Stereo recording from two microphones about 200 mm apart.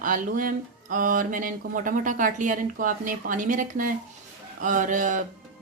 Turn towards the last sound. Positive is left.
turn(degrees=-40)  # may be behind; listen again after turning